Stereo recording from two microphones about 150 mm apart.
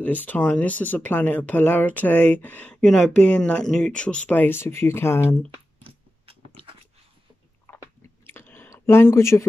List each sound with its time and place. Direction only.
0.0 s speech: 10° left (ahead or behind)
7.7 s biting: 10° left (ahead or behind)
8.3 s chewing: 15° left (ahead or behind)